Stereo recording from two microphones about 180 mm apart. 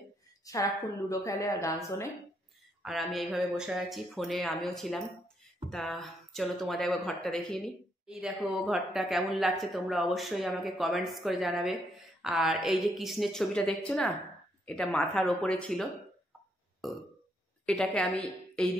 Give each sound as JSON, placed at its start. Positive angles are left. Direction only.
{"t": 0.5, "sound": "a woman's voice", "side_deg": 20}
{"t": 2.8, "sound": "a woman's voice", "side_deg": 0}